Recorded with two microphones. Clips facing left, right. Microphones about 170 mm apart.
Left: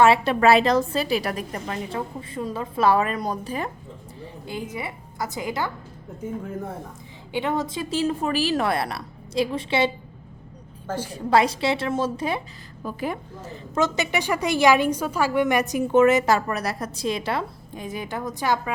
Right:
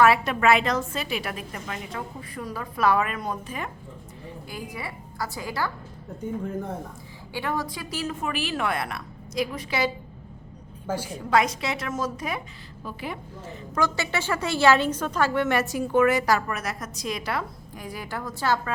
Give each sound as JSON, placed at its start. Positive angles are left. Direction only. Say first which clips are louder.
{"t": 0.0, "sound": "a woman's voice", "louder": "left 3 dB", "side_deg": 30}
{"t": 4.4, "sound": "a woman's voice", "louder": "left 5 dB", "side_deg": 20}
{"t": 7.3, "sound": "a woman's voice", "louder": "left 4 dB", "side_deg": 20}
{"t": 10.8, "sound": "a woman's voice", "louder": "even", "side_deg": -10}
{"t": 11.1, "sound": "a woman's voice", "louder": "left 3 dB", "side_deg": 30}
{"t": 12.8, "sound": "a woman's voice", "louder": "left 6 dB", "side_deg": 45}
{"t": 13.7, "sound": "a woman's voice", "louder": "left 3 dB", "side_deg": 20}
{"t": 16.5, "sound": "a woman's voice", "louder": "left 4 dB", "side_deg": 35}